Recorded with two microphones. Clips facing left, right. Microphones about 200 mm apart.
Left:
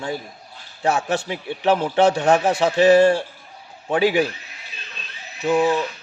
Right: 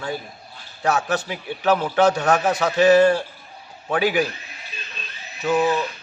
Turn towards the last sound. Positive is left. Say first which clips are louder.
# left 1 dB
turn(degrees=10)  # may be behind; listen again after turning